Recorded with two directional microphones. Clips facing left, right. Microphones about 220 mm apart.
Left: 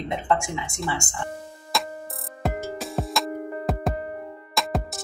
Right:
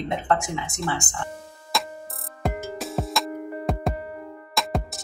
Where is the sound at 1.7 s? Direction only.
Centre (ahead or behind).